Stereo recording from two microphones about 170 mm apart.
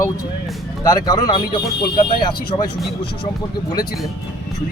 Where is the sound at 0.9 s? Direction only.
20° left (ahead or behind).